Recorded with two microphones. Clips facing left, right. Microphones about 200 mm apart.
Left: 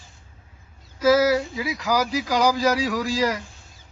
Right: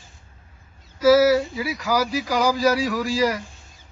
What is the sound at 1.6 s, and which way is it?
Speech, 15° left (ahead or behind).